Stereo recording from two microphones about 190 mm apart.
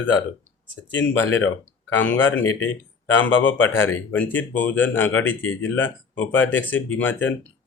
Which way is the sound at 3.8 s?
10° left (ahead or behind).